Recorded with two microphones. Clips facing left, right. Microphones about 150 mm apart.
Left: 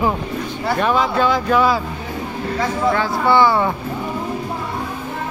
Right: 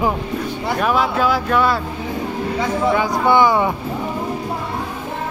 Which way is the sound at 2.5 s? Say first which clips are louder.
Even; 15° right (ahead or behind).